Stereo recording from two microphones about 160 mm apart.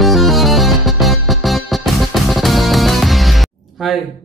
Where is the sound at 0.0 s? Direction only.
Centre (ahead or behind).